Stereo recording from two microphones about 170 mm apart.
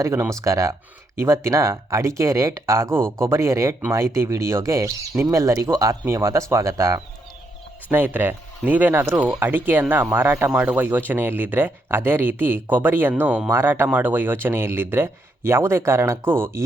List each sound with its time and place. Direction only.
0.0 s speech: 15° right (ahead or behind)